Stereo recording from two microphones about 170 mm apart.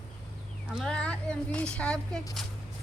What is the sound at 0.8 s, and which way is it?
A woman's voice, 5° left (ahead or behind).